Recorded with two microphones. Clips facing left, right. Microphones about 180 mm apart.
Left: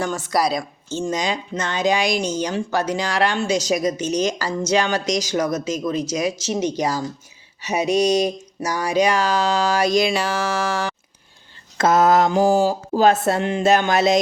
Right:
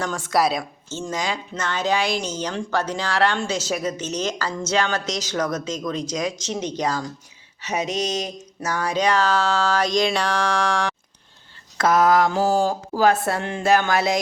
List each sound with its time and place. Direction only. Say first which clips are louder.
0.0 s a woman's voice: even; centre (ahead or behind)
0.9 s speech: left 4 dB; 15° left (ahead or behind)
11.8 s speech: left 2 dB; 25° left (ahead or behind); by 12.7 s 10° left (ahead or behind)
12.9 s speech: left 3 dB; 25° left (ahead or behind)